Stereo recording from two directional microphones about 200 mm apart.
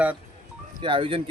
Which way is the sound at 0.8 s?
25° right (ahead or behind).